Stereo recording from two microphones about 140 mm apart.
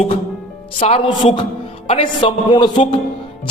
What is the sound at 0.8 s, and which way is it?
A man's voice, 40° left (ahead or behind).